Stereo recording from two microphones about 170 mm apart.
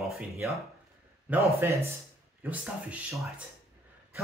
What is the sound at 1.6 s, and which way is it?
Speech, 15° right (ahead or behind).